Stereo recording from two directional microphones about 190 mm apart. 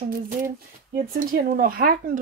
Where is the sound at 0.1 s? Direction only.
45° right (ahead or behind).